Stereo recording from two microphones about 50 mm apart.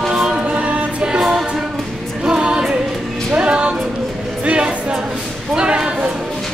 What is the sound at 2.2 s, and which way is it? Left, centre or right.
Music, centre.